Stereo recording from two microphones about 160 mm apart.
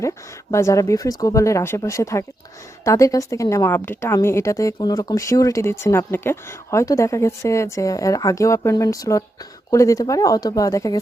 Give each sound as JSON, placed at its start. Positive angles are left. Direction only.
{"t": 0.5, "sound": "a woman's voice", "side_deg": 20}